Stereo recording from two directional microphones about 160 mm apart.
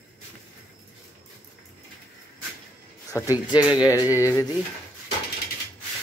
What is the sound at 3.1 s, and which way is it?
Speech, 20° left (ahead or behind).